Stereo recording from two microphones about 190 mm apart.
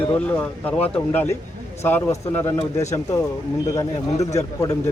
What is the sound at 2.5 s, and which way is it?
Speech, 35° left (ahead or behind).